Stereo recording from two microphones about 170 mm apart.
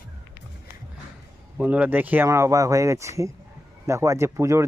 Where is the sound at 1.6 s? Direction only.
10° right (ahead or behind).